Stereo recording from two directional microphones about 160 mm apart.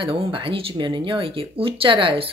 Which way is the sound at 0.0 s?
35° right (ahead or behind).